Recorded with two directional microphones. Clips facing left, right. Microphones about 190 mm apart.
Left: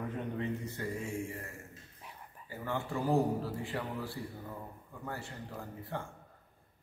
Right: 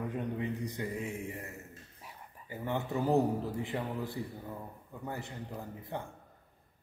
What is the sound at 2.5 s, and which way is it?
A man's voice, 20° right (ahead or behind).